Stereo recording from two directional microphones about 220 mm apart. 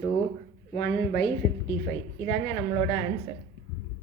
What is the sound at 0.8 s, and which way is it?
Speech, 45° left (ahead or behind).